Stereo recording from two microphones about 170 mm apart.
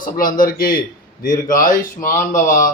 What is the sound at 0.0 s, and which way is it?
A man's voice, 55° left (ahead or behind).